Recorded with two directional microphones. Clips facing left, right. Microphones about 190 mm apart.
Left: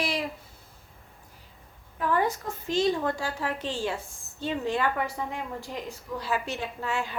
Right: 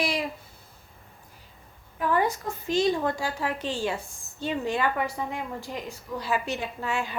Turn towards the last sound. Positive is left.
turn(degrees=-15)  # may be behind; listen again after turning